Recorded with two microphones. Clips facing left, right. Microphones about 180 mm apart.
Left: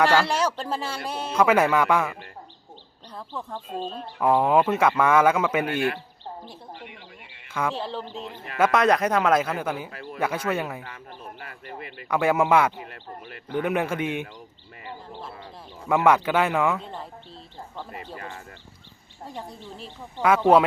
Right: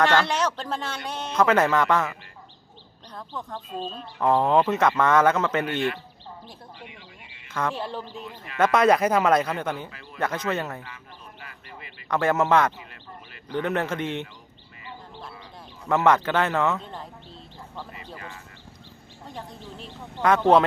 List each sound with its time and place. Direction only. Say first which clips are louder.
0.0 s a man's voice: left 1 dB; 10° left (ahead or behind)
3.2 s a man's voice: left 1 dB; 5° left (ahead or behind)
7.6 s a man's voice: left 1 dB; 10° left (ahead or behind)
9.9 s speech: left 8 dB; 50° left (ahead or behind)
10.2 s a man's voice: left 1 dB; 10° left (ahead or behind)
10.8 s a sound: left 5 dB; 50° left (ahead or behind)
12.0 s a man's voice: left 1 dB; 10° left (ahead or behind)
12.7 s speech: left 5 dB; 50° left (ahead or behind)
13.5 s a man's voice: left 1 dB; 10° left (ahead or behind)
15.9 s a man's voice: left 1 dB; 10° left (ahead or behind)
20.1 s a man's voice: left 1 dB; 5° left (ahead or behind)